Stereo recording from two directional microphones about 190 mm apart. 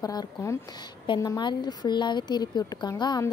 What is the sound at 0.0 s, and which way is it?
A woman's voice, 20° left (ahead or behind).